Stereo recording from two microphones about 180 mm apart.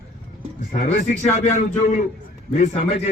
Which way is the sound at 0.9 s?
40° left (ahead or behind).